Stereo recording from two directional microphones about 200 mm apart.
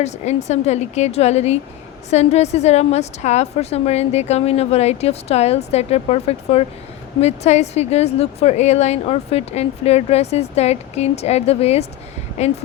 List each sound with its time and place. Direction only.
0.0 s a woman's voice: 35° left (ahead or behind)